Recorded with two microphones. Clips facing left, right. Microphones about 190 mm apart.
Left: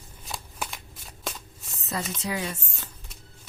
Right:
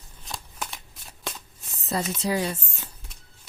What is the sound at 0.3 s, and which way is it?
Shuffling cards, 5° left (ahead or behind).